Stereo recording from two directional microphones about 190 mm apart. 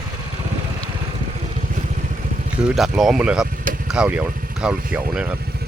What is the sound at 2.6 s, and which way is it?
Speech, centre (ahead or behind).